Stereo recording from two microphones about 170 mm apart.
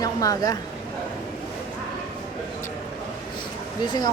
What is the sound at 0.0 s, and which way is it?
Speech, 20° left (ahead or behind).